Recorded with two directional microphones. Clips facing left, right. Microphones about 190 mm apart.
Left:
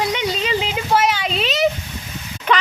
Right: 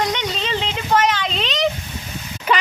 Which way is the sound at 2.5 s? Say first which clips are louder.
Left 1 dB; 5° right (ahead or behind).